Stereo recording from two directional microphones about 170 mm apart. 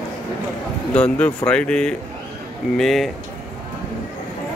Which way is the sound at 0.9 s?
5° left (ahead or behind).